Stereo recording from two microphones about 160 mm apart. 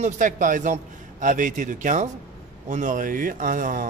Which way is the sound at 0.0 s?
55° right (ahead or behind).